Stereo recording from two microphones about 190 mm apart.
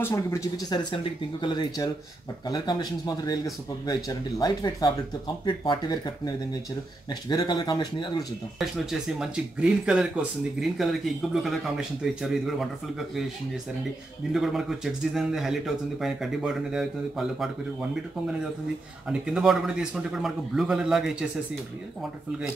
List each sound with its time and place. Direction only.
0.0 s speech: 15° left (ahead or behind)
8.5 s speech: centre (ahead or behind)
14.3 s speech: centre (ahead or behind)
19.0 s speech: 5° right (ahead or behind)